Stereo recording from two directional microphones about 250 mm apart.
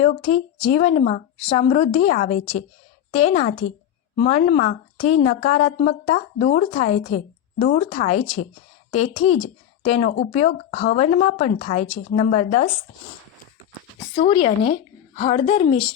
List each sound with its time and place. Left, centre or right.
0.0 s a woman's voice: left
14.2 s a woman's voice: left